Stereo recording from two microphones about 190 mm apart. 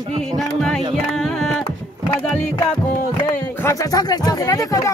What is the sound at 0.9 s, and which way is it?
Music, centre (ahead or behind).